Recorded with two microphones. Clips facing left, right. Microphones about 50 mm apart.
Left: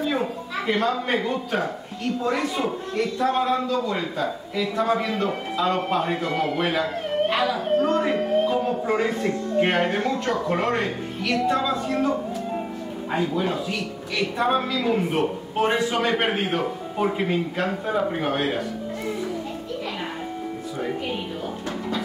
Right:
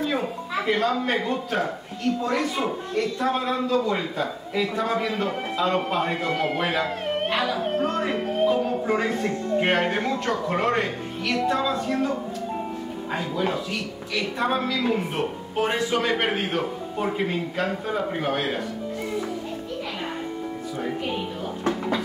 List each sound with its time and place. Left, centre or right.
0.0 s a man's voice: centre
9.8 s speech: centre
10.2 s a man's voice: centre
13.1 s a man's voice: centre